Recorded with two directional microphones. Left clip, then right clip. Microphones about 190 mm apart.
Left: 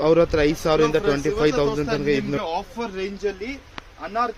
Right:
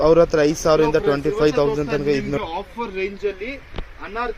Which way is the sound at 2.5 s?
15° left (ahead or behind).